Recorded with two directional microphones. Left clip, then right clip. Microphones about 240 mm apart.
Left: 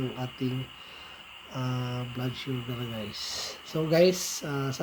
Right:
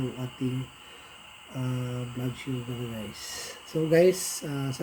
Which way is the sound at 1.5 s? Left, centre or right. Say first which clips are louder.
Left 1 dB; centre.